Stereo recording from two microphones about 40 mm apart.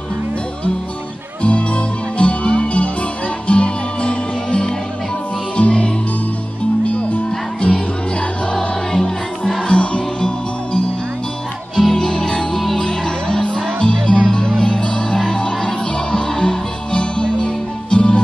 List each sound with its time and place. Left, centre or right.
1.4 s music: left
6.9 s music: left
9.7 s music: left
11.7 s music: centre
12.0 s music: centre